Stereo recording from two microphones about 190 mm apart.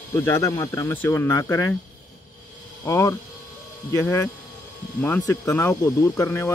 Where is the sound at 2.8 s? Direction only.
15° left (ahead or behind).